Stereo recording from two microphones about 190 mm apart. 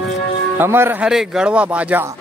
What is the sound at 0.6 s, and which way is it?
Speech, 10° right (ahead or behind).